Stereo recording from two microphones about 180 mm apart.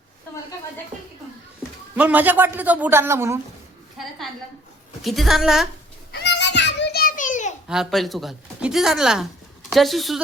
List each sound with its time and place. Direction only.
2.0 s a man's voice: 10° right (ahead or behind)
4.0 s a sound: centre (ahead or behind)
5.0 s speech: centre (ahead or behind)
6.1 s children playing: 75° left (ahead or behind); by 7.5 s 45° left (ahead or behind)
7.7 s a woman's voice: centre (ahead or behind)